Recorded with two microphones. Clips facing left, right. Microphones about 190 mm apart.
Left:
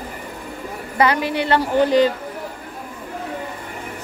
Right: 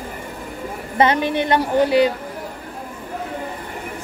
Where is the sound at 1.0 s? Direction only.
25° right (ahead or behind).